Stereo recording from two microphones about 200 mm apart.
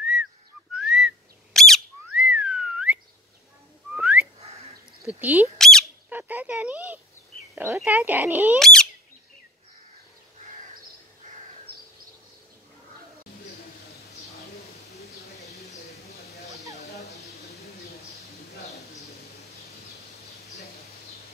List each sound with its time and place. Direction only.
0.0 s whistling: 5° right (ahead or behind)
4.4 s a sound: 30° right (ahead or behind)
5.0 s speech: 10° right (ahead or behind)
5.6 s bird: centre (ahead or behind)
6.0 s a sound: 10° right (ahead or behind)
7.5 s speech: 10° right (ahead or behind)
8.5 s bird: centre (ahead or behind)
15.0 s mouse: 35° left (ahead or behind)
16.7 s a sound: 35° left (ahead or behind)